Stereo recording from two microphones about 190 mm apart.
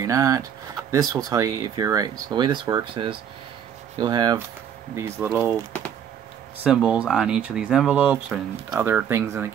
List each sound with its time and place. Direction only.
0.0 s speech: 20° right (ahead or behind)
6.6 s speech: 5° right (ahead or behind)